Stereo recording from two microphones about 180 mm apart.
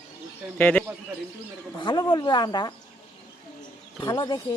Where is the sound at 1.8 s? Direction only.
25° left (ahead or behind).